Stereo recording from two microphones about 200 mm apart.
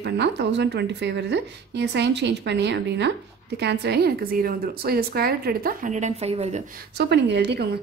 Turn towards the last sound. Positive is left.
turn(degrees=-60)  # may be behind; listen again after turning